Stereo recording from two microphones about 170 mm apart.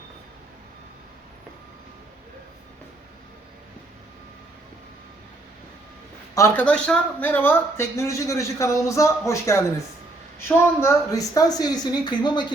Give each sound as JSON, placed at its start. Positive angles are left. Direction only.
{"t": 6.3, "sound": "speech", "side_deg": 15}
{"t": 10.8, "sound": "speech", "side_deg": 20}